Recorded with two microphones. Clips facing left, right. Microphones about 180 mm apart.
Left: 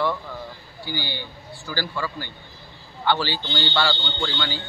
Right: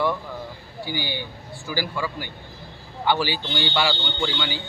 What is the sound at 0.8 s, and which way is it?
A man's voice, 15° right (ahead or behind).